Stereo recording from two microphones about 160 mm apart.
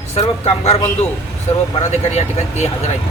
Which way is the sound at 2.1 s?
45° left (ahead or behind).